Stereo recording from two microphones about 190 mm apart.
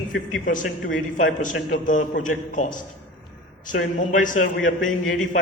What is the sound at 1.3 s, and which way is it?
A man's voice, 40° left (ahead or behind).